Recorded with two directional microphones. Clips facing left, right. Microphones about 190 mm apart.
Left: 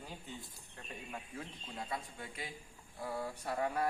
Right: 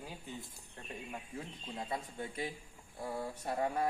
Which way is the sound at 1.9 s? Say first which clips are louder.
Right 5 dB; 25° right (ahead or behind).